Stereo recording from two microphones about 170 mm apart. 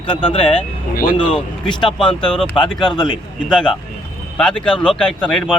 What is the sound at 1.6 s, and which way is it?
Speech, 30° left (ahead or behind).